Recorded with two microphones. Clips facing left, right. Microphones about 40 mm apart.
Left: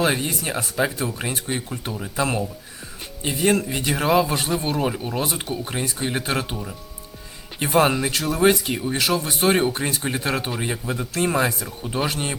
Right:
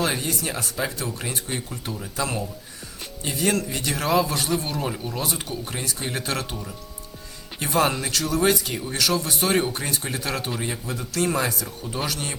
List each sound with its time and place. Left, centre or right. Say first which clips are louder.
0.0 s speech: left 3 dB; left